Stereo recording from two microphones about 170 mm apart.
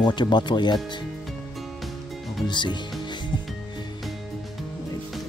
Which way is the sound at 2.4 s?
25° left (ahead or behind).